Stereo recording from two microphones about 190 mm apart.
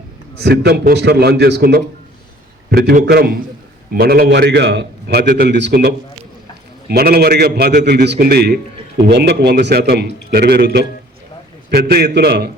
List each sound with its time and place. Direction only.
0.3 s a man's voice: 60° right (ahead or behind)
7.8 s a man's voice: 45° right (ahead or behind)
8.0 s a man's voice: 60° right (ahead or behind)